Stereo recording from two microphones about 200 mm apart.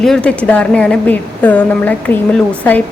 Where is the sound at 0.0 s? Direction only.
5° left (ahead or behind).